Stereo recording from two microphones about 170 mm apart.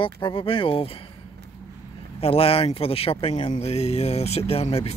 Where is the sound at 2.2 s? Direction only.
35° left (ahead or behind).